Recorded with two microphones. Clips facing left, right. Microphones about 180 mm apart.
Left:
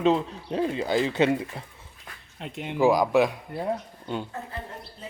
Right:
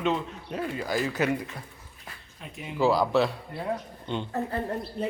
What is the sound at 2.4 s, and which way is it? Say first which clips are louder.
Speech: left 5 dB; 75° left (ahead or behind).